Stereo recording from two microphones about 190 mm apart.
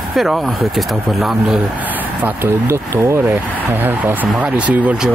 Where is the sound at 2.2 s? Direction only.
15° right (ahead or behind).